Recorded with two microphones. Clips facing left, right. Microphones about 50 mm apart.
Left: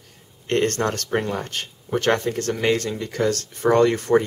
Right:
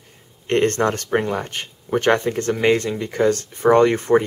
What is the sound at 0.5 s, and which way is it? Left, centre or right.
Speech, right.